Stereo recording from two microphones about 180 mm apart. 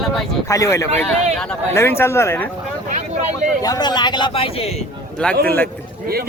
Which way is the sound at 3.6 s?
20° left (ahead or behind).